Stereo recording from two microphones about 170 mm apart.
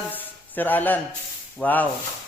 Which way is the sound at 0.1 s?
10° left (ahead or behind).